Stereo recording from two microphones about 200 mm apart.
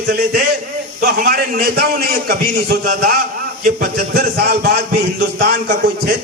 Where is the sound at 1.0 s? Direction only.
45° right (ahead or behind).